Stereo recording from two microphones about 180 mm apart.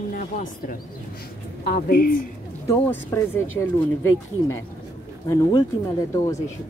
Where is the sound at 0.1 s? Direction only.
50° left (ahead or behind).